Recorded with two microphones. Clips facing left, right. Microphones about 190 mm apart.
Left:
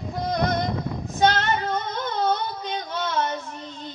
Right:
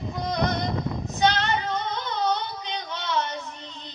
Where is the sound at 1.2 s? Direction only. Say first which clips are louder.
Left 2 dB; 50° left (ahead or behind).